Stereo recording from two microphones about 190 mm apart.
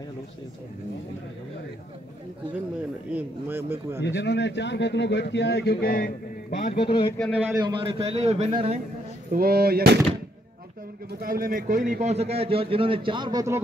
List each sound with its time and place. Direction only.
3.2 s speech: 10° right (ahead or behind)
4.0 s a man's voice: 65° left (ahead or behind); by 6.1 s 50° left (ahead or behind)
6.6 s speech: 30° left (ahead or behind)
7.3 s speech: 10° right (ahead or behind)
7.6 s a man's voice: 25° right (ahead or behind)
9.3 s speech: 55° right (ahead or behind)
11.1 s a man's voice: 50° right (ahead or behind); by 13.6 s 20° right (ahead or behind)